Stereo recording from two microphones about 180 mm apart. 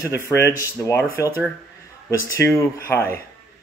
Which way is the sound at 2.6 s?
15° left (ahead or behind).